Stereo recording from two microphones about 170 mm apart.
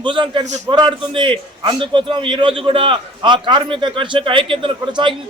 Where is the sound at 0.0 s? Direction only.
30° right (ahead or behind).